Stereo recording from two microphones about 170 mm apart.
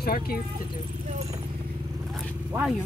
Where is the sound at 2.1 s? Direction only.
Centre (ahead or behind).